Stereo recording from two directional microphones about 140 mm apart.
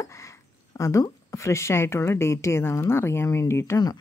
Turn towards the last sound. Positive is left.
turn(degrees=25)  # may be behind; listen again after turning